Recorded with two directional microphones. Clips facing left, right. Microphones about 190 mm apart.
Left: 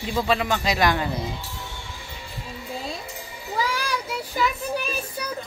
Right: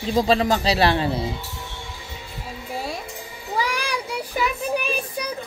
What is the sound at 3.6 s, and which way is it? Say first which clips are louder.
Child singing: left 1 dB; 15° right (ahead or behind).